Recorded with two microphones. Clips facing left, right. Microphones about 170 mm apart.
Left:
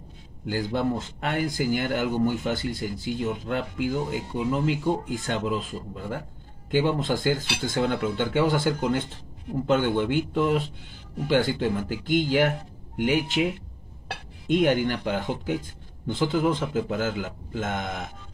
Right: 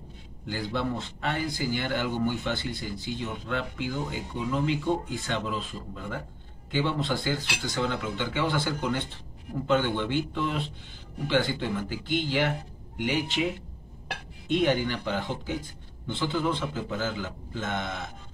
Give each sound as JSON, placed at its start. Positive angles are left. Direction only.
{"t": 0.5, "sound": "speech", "side_deg": 45}
{"t": 14.5, "sound": "speech", "side_deg": 50}